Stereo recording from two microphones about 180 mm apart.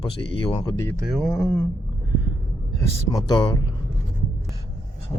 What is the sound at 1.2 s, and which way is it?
Speech, 10° left (ahead or behind).